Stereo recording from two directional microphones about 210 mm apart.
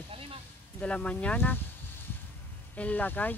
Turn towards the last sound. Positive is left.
turn(degrees=10)  # may be behind; listen again after turning